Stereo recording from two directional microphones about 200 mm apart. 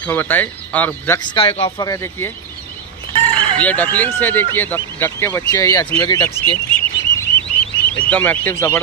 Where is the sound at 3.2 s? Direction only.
10° left (ahead or behind).